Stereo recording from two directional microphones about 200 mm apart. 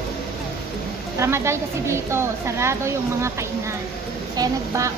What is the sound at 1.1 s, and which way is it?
A woman's voice, 15° right (ahead or behind).